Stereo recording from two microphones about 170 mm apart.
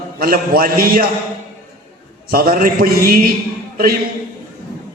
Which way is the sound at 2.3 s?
60° right (ahead or behind).